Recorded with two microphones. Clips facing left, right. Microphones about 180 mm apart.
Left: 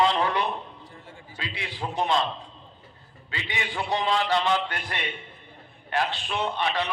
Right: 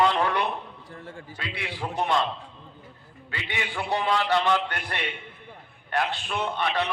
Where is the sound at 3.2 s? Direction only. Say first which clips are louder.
Even; 55° right (ahead or behind).